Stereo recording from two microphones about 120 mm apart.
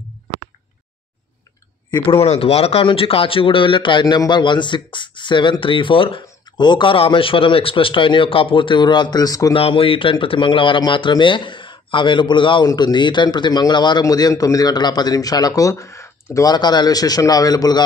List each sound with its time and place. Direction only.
2.2 s speech: 60° left (ahead or behind); by 9.5 s 30° left (ahead or behind)
9.5 s speech: 50° left (ahead or behind); by 16.1 s 25° left (ahead or behind)
16.3 s speech: 35° left (ahead or behind)